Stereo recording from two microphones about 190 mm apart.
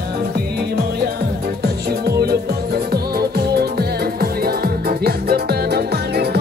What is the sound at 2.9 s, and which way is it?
Music, 55° right (ahead or behind).